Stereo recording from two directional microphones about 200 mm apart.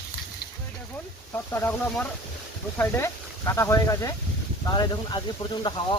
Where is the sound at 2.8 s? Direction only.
15° left (ahead or behind).